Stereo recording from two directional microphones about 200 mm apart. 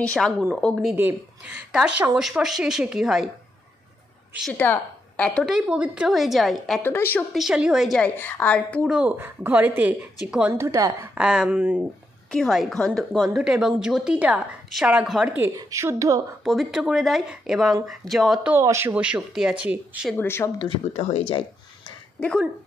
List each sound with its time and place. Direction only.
0.0 s a woman's voice: 5° left (ahead or behind)
0.9 s a woman's voice: 10° right (ahead or behind)
4.4 s a woman's voice: 5° left (ahead or behind)
7.3 s a woman's voice: 5° right (ahead or behind)
11.1 s a woman's voice: 5° right (ahead or behind)
16.4 s a woman's voice: centre (ahead or behind)
18.6 s speech: 15° right (ahead or behind)
20.1 s speech: 10° left (ahead or behind); by 21.2 s 30° left (ahead or behind)
21.3 s a sound: 25° left (ahead or behind)
22.2 s a woman's voice: 5° left (ahead or behind)